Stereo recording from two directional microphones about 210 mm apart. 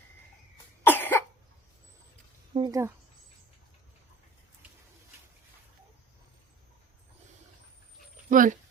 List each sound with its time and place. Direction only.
0.9 s cough: 10° left (ahead or behind)
2.5 s speech: 25° right (ahead or behind)
8.3 s speech: 40° right (ahead or behind)